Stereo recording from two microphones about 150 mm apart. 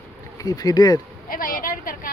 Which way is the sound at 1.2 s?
70° left (ahead or behind).